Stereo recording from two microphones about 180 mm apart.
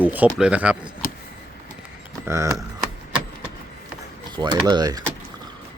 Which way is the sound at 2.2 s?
15° right (ahead or behind).